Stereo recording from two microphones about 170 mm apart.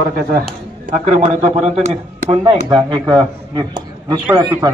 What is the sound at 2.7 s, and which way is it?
A man's voice, 25° right (ahead or behind).